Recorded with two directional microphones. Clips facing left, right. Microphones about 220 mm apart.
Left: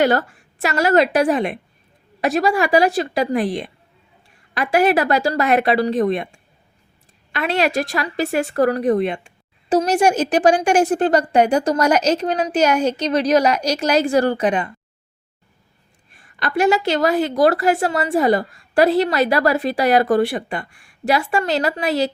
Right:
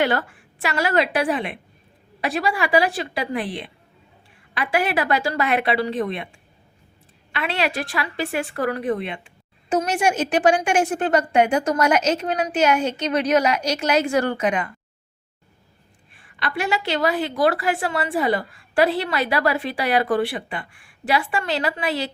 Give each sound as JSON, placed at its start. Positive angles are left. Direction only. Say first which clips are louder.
{"t": 0.0, "sound": "a woman's voice", "louder": "left 5 dB", "side_deg": 40}
{"t": 7.3, "sound": "a woman's voice", "louder": "left 5 dB", "side_deg": 40}
{"t": 16.1, "sound": "a woman's voice", "louder": "left 6 dB", "side_deg": 45}